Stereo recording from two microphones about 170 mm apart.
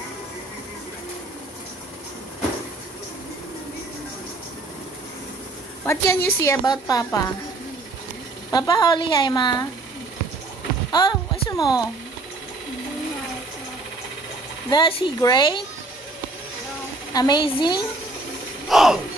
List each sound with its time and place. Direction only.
5.9 s a woman's voice: 15° left (ahead or behind)
8.5 s speech: 25° left (ahead or behind)
10.9 s a sound: 25° left (ahead or behind)
14.7 s speech: 30° left (ahead or behind)
17.1 s speech: 25° left (ahead or behind)
18.7 s mechanisms: centre (ahead or behind)